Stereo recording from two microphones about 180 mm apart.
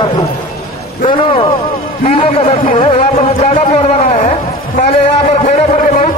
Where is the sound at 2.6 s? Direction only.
45° left (ahead or behind).